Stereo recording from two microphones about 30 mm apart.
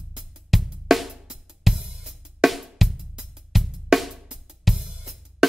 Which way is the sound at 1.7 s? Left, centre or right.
Centre.